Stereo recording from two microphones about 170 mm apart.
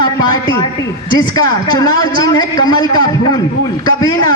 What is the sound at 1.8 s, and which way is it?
A man's voice, 25° left (ahead or behind).